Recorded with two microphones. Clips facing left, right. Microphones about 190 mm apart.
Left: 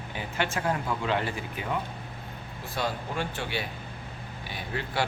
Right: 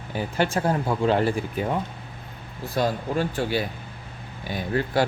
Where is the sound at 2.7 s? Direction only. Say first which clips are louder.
Right 7 dB; 40° right (ahead or behind).